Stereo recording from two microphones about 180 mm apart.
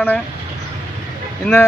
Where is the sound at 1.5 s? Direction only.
5° left (ahead or behind).